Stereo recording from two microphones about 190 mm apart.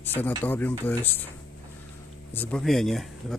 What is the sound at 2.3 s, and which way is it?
Speech, 10° left (ahead or behind).